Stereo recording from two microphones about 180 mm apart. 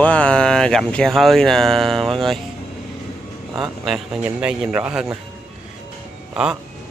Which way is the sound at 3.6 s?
5° right (ahead or behind).